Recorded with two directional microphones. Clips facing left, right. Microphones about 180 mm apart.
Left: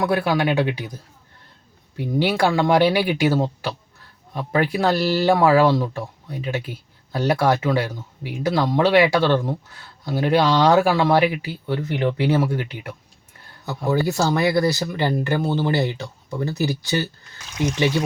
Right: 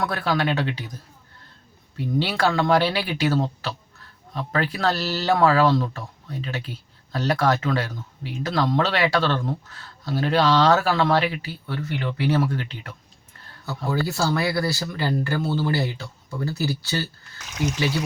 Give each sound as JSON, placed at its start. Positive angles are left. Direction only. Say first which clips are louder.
{"t": 0.0, "sound": "speech", "louder": "left 4 dB", "side_deg": 10}
{"t": 2.0, "sound": "speech", "louder": "left 3 dB", "side_deg": 15}